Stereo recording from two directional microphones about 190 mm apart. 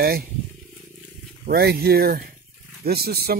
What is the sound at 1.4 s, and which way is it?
Speech, 55° right (ahead or behind).